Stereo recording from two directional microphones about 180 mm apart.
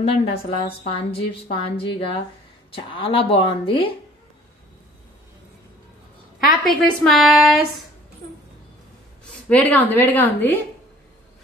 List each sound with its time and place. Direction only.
0.0 s a woman's voice: 35° left (ahead or behind)
6.6 s a woman's voice: centre (ahead or behind)
9.3 s a woman's voice: 10° left (ahead or behind)